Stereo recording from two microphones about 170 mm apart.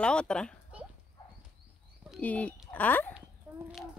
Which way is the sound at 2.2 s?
10° left (ahead or behind).